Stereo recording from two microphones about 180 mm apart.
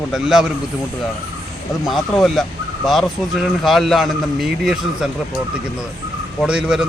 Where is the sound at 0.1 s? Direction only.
5° right (ahead or behind).